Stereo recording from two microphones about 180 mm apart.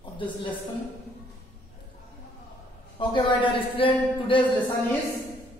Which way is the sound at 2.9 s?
25° left (ahead or behind).